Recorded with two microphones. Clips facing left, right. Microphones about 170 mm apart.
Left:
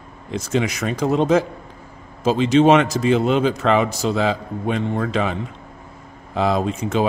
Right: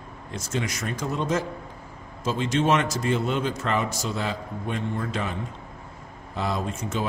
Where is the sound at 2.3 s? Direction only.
90° left.